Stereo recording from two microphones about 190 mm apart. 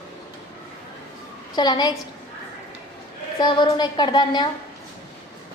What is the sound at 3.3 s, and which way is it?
A woman's voice, 25° left (ahead or behind).